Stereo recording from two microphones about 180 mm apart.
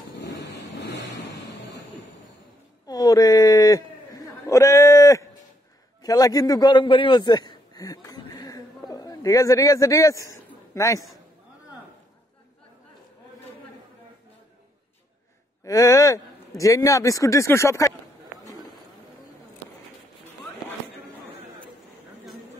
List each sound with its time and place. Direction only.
0.7 s vehicle: 65° left (ahead or behind)
2.9 s a sound: 20° left (ahead or behind)
6.0 s a man's voice: 20° left (ahead or behind)
15.6 s speech: 20° left (ahead or behind)